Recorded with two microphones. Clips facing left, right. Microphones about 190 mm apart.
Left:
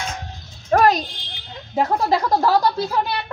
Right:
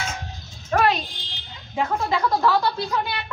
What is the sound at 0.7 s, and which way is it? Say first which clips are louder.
Music: left 4 dB; 40° left (ahead or behind).